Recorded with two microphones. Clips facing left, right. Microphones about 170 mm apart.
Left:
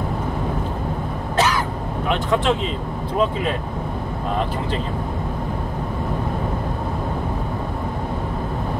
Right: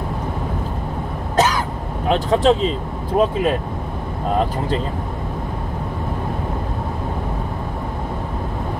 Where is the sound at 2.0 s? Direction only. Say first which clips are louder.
Right 5 dB; 35° right (ahead or behind).